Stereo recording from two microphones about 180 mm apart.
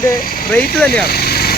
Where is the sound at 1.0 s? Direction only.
60° left (ahead or behind).